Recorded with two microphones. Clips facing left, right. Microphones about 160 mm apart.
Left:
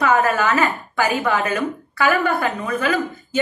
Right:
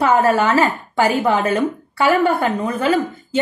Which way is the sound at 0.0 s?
30° right (ahead or behind).